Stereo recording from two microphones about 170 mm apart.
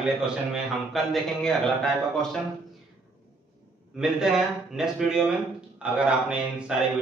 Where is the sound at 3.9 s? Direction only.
5° right (ahead or behind).